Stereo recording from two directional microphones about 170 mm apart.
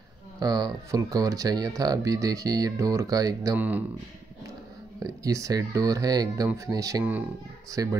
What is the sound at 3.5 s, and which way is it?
Speech, 10° right (ahead or behind).